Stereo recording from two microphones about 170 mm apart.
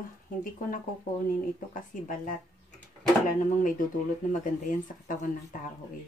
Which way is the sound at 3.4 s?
50° left (ahead or behind).